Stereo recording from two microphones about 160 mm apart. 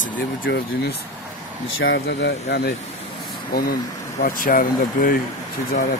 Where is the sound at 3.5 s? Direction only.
75° left (ahead or behind).